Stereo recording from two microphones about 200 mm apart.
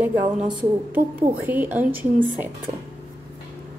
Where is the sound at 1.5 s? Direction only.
10° right (ahead or behind).